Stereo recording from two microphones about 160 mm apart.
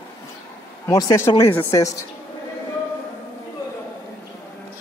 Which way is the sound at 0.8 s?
20° left (ahead or behind).